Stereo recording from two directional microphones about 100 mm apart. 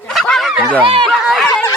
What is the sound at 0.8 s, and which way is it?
Speech, 60° right (ahead or behind).